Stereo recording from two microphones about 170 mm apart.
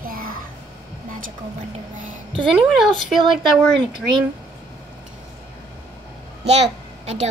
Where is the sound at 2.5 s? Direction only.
Centre (ahead or behind).